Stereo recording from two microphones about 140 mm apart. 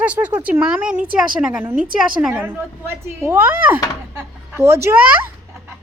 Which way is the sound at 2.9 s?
20° right (ahead or behind).